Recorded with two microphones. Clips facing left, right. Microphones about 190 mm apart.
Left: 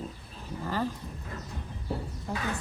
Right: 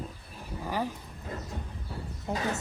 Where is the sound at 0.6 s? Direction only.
15° right (ahead or behind).